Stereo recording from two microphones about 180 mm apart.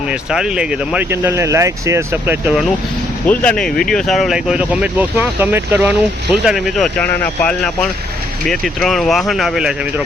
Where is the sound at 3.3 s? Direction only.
5° left (ahead or behind).